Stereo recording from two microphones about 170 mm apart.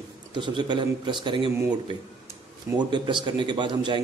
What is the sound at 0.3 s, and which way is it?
Speech, 25° right (ahead or behind).